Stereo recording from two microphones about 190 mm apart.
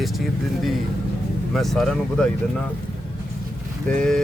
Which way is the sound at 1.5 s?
Centre (ahead or behind).